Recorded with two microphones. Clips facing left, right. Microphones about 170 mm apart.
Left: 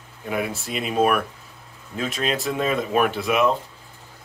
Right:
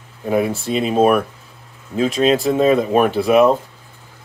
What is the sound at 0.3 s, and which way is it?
Speech, 30° right (ahead or behind).